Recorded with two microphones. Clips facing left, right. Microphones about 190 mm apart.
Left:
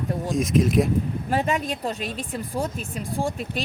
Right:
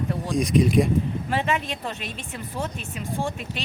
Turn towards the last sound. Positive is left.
turn(degrees=35)  # may be behind; listen again after turning